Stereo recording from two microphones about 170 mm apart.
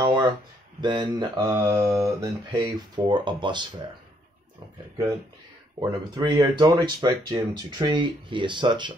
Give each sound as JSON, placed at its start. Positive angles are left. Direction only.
{"t": 0.0, "sound": "speech", "side_deg": -25}
{"t": 5.8, "sound": "speech", "side_deg": -25}